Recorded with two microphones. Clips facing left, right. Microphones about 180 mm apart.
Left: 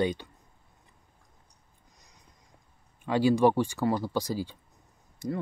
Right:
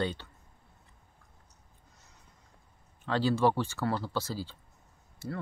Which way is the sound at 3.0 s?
15° left (ahead or behind).